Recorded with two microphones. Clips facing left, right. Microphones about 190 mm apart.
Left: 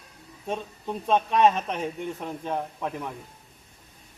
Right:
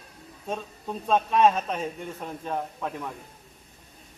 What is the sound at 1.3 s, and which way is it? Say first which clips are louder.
Speech: right 1 dB; 15° left (ahead or behind).